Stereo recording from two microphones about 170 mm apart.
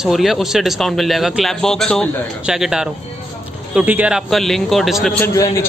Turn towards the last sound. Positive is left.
turn(degrees=20)  # may be behind; listen again after turning